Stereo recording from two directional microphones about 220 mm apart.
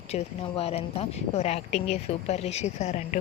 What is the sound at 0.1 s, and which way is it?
Speech, 25° left (ahead or behind).